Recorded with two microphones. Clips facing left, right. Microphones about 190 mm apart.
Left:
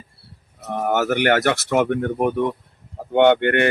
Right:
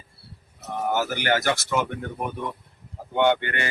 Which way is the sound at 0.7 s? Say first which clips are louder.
Left 5 dB; 60° left (ahead or behind).